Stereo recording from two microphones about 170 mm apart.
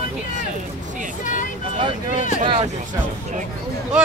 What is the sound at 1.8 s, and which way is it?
Speech, 40° right (ahead or behind).